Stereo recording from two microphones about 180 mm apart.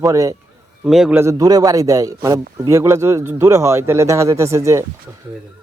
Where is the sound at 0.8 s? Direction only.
5° right (ahead or behind).